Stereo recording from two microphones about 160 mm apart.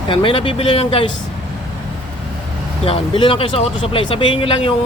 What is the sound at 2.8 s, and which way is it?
Speech, 35° left (ahead or behind).